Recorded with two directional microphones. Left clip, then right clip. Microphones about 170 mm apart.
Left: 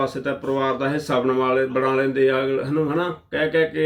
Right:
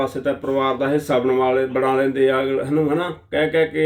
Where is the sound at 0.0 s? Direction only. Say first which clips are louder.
Right 2 dB; 20° right (ahead or behind).